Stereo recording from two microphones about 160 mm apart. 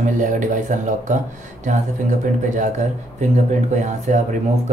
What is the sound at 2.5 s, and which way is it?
Speech, 50° right (ahead or behind).